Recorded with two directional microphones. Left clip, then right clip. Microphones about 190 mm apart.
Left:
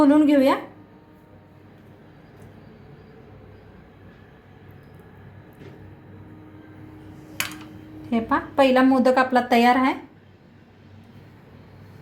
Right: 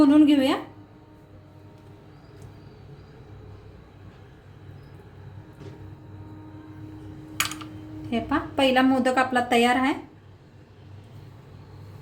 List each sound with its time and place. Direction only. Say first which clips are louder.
0.0 s a woman's voice: left 2 dB; 30° left (ahead or behind)
8.1 s a woman's voice: left 4 dB; 20° left (ahead or behind)